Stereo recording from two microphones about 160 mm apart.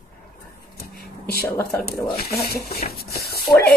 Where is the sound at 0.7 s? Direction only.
75° left (ahead or behind).